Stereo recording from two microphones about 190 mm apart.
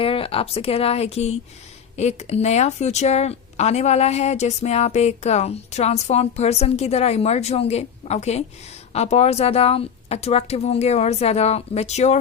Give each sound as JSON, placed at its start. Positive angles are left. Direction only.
{"t": 0.0, "sound": "speech", "side_deg": 30}